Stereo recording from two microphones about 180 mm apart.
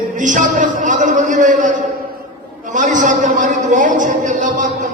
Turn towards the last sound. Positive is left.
turn(degrees=-45)  # may be behind; listen again after turning